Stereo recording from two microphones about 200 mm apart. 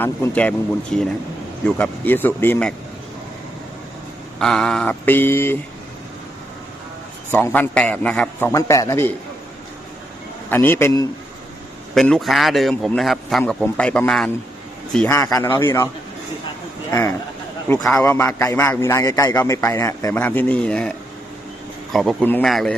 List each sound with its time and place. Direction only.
0.0 s a man's voice: 10° left (ahead or behind)
4.4 s a man's voice: 5° left (ahead or behind)
7.3 s a man's voice: 10° left (ahead or behind)
8.5 s a man's voice: 15° left (ahead or behind)
10.5 s a man's voice: 10° left (ahead or behind)
11.9 s a man's voice: centre (ahead or behind)
17.8 s a man's voice: 5° left (ahead or behind)
21.9 s a man's voice: 5° left (ahead or behind)